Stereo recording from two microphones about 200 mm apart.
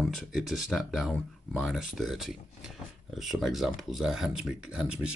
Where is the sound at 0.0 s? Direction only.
Centre (ahead or behind).